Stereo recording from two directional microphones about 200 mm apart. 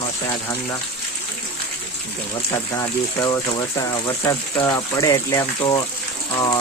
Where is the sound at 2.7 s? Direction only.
15° left (ahead or behind).